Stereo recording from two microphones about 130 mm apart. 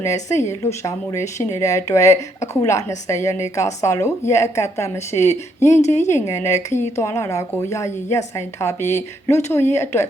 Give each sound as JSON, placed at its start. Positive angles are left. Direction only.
{"t": 0.0, "sound": "a woman's voice", "side_deg": 25}
{"t": 5.8, "sound": "speech", "side_deg": 60}
{"t": 6.1, "sound": "a woman's voice", "side_deg": 20}